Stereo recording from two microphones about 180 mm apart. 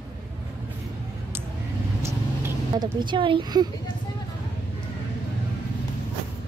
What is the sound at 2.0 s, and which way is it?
Vehicle, 20° right (ahead or behind).